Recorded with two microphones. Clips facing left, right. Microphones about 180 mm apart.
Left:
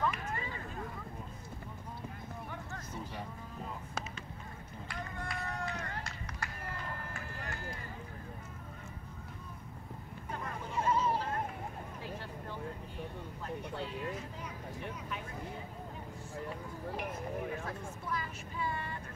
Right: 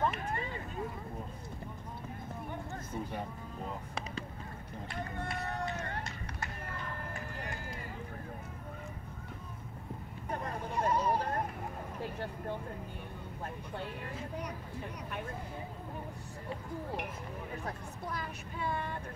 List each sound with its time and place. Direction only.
0.1 s a sound: 30° right (ahead or behind)
2.9 s cattle: 50° right (ahead or behind)
4.8 s run: 25° right (ahead or behind)
10.7 s a sound: 60° right (ahead or behind)
13.4 s vehicle: 60° right (ahead or behind)
17.6 s vehicle: 40° right (ahead or behind)
18.6 s vehicle: 55° right (ahead or behind)